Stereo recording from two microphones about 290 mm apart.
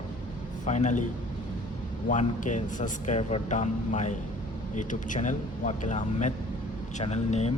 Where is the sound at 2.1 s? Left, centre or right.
Left.